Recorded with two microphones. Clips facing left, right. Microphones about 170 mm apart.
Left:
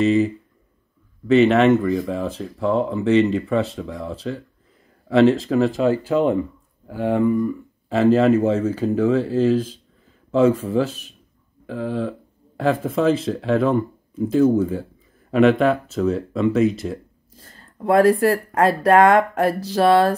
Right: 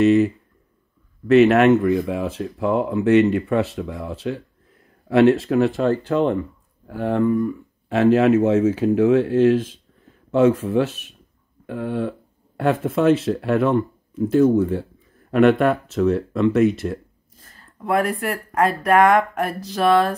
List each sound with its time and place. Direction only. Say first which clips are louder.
0.0 s speech: right 2 dB; 5° right (ahead or behind)
17.4 s speech: left 4 dB; 30° left (ahead or behind)